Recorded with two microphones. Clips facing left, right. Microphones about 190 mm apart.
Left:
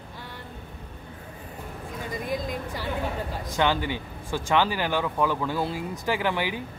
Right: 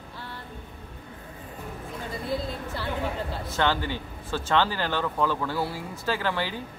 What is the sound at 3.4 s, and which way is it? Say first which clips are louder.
A woman's voice: left 2 dB; 15° left (ahead or behind).